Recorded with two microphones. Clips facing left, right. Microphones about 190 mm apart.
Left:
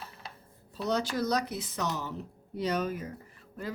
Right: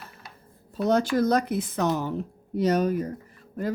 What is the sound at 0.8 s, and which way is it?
A woman's voice, 50° right (ahead or behind).